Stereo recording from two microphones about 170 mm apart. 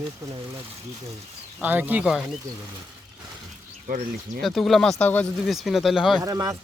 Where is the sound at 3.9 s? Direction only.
55° right (ahead or behind).